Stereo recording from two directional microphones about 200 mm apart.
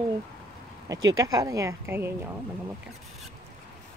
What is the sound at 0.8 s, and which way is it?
Speech, 20° right (ahead or behind).